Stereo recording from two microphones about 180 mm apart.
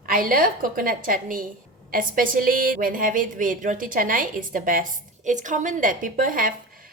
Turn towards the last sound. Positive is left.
turn(degrees=-50)  # may be behind; listen again after turning